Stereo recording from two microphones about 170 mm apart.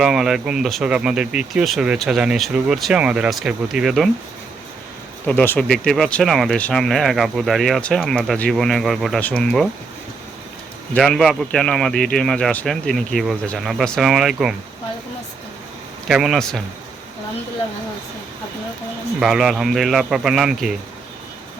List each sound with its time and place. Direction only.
0.0 s speech: 5° right (ahead or behind)
5.2 s speech: 10° left (ahead or behind)
10.9 s speech: 5° left (ahead or behind)
16.0 s speech: centre (ahead or behind)
19.2 s speech: centre (ahead or behind)